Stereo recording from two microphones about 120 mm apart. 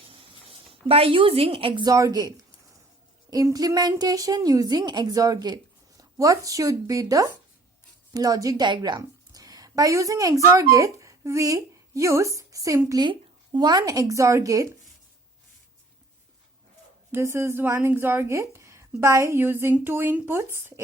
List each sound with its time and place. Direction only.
0.1 s a woman's voice: 50° right (ahead or behind); by 14.7 s 30° right (ahead or behind)
17.1 s speech: 20° right (ahead or behind)